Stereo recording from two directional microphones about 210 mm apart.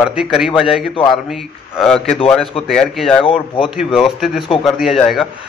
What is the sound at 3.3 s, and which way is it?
Speech, 25° left (ahead or behind).